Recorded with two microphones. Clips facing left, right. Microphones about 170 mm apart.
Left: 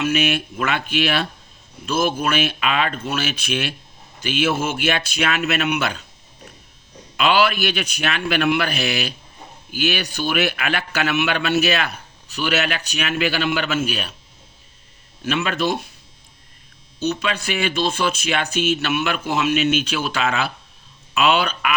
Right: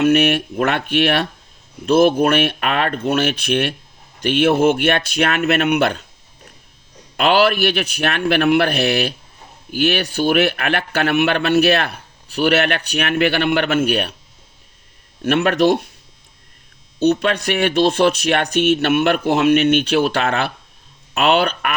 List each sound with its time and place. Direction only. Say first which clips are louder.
0.0 s a man's voice: right 6 dB; 60° right (ahead or behind)
7.2 s a man's voice: right 3 dB; 60° right (ahead or behind)
15.2 s a man's voice: right 7 dB; 65° right (ahead or behind)
17.0 s a man's voice: right 7 dB; 60° right (ahead or behind)